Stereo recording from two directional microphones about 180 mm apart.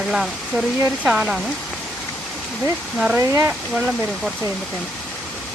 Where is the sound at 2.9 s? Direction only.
5° right (ahead or behind).